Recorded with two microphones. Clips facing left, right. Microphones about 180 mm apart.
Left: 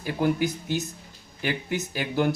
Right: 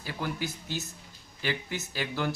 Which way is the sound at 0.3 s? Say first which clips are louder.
Left 8 dB; 15° left (ahead or behind).